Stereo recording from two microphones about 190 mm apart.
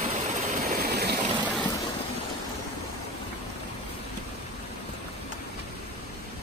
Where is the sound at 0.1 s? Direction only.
40° right (ahead or behind); by 1.2 s 55° right (ahead or behind).